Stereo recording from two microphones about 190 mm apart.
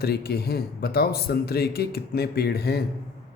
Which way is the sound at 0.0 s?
55° left (ahead or behind).